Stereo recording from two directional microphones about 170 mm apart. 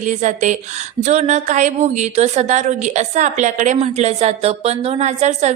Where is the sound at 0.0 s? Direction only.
45° right (ahead or behind).